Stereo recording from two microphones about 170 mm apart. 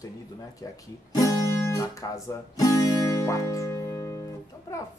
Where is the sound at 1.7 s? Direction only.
20° left (ahead or behind).